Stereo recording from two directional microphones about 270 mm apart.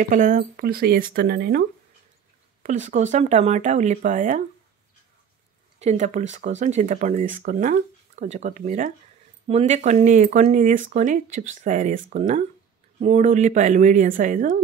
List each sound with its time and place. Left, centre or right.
0.1 s speech: right
2.6 s speech: right
5.8 s speech: right